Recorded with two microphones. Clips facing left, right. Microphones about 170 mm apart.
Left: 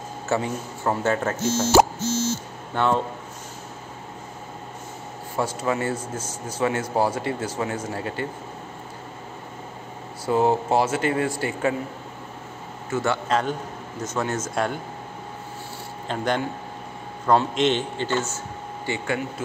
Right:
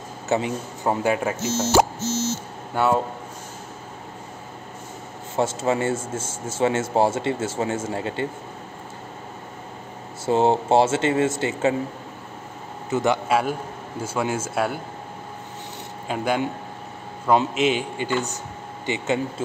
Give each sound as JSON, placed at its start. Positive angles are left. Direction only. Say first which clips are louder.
{"t": 0.3, "sound": "speech", "louder": "right 2 dB", "side_deg": -15}
{"t": 2.7, "sound": "speech", "louder": "right 2 dB", "side_deg": -5}
{"t": 5.3, "sound": "a man's voice", "louder": "right 3 dB", "side_deg": -25}
{"t": 10.2, "sound": "a man's voice", "louder": "right 1 dB", "side_deg": -25}
{"t": 12.9, "sound": "speech", "louder": "right 2 dB", "side_deg": -15}
{"t": 16.1, "sound": "speech", "louder": "right 1 dB", "side_deg": -10}